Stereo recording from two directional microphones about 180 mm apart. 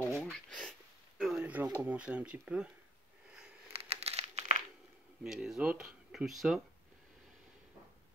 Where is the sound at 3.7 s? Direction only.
35° right (ahead or behind).